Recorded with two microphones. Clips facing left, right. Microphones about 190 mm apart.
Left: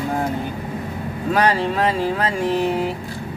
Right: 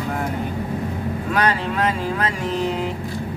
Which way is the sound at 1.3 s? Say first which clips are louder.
Left 3 dB; 30° left (ahead or behind).